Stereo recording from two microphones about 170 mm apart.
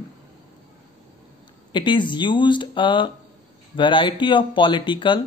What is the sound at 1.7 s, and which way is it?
Speech, 30° left (ahead or behind).